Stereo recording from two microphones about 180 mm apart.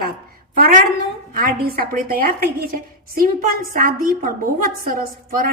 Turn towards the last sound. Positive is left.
turn(degrees=-50)  # may be behind; listen again after turning